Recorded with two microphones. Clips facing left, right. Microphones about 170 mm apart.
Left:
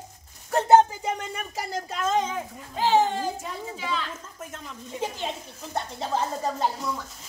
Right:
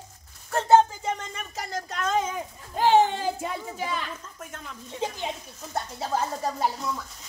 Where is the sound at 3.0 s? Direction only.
60° right (ahead or behind).